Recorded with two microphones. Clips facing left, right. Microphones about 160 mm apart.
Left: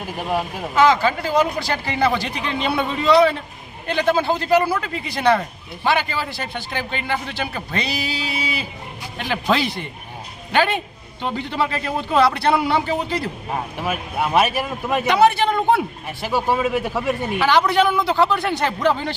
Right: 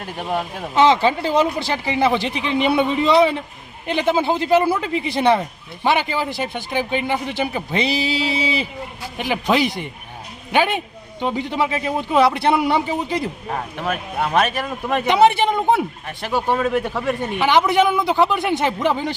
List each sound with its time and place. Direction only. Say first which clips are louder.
0.0 s speech: left 1 dB; 5° left (ahead or behind)
0.8 s a man's voice: right 1 dB; 25° right (ahead or behind)
9.1 s speech: right 2 dB; 15° right (ahead or behind)
13.7 s speech: right 1 dB; 5° left (ahead or behind)
15.0 s a man's voice: right 1 dB; 20° right (ahead or behind)
15.7 s speech: even; 5° left (ahead or behind)
17.4 s a man's voice: right 1 dB; 20° right (ahead or behind)